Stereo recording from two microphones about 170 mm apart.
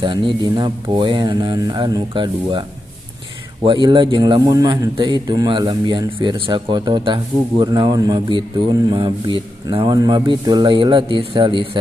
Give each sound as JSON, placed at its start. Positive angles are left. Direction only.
{"t": 0.0, "sound": "a man's voice", "side_deg": -25}
{"t": 3.6, "sound": "a man's voice", "side_deg": -30}